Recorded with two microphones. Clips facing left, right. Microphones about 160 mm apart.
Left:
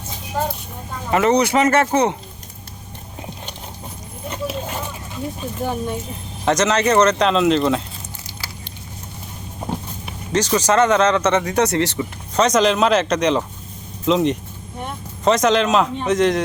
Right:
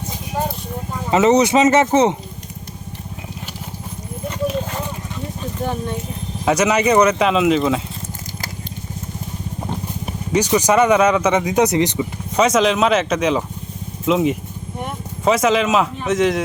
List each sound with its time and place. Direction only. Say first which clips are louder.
1.1 s speech: right 3 dB; 20° right (ahead or behind)
5.4 s a sound: right 1 dB; 10° left (ahead or behind)
6.4 s speech: right 1 dB; 10° right (ahead or behind)
10.3 s speech: right 2 dB; 15° right (ahead or behind)